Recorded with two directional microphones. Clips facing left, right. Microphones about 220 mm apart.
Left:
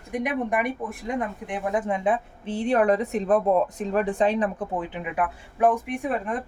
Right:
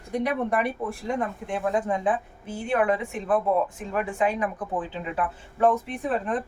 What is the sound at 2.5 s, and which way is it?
Speech, 35° left (ahead or behind).